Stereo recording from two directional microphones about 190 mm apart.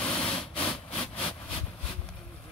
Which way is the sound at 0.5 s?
5° left (ahead or behind).